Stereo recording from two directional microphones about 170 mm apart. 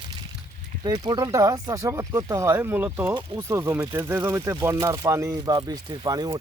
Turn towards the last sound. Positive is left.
turn(degrees=-25)  # may be behind; listen again after turning